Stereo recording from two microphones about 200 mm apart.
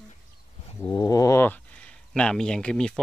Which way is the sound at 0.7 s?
20° left (ahead or behind).